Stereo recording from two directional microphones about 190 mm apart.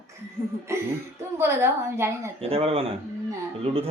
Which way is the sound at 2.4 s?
30° right (ahead or behind).